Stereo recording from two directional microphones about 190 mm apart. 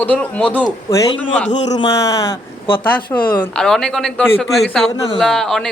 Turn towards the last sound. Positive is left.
turn(degrees=0)  # may be behind; listen again after turning